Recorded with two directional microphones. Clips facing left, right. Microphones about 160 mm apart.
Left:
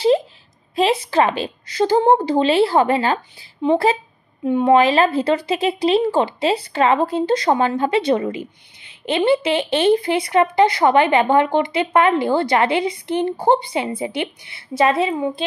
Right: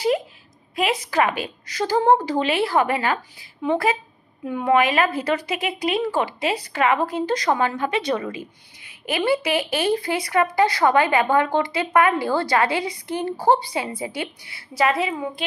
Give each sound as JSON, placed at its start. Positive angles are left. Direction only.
{"t": 0.7, "sound": "a woman's voice", "side_deg": 30}